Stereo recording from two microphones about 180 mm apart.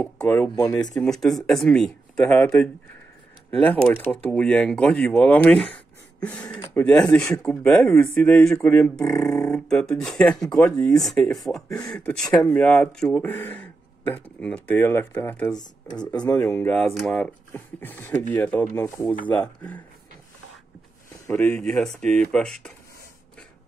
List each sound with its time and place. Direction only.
0.0 s speech: 10° left (ahead or behind)
0.9 s speech: centre (ahead or behind)
21.3 s speech: 5° left (ahead or behind)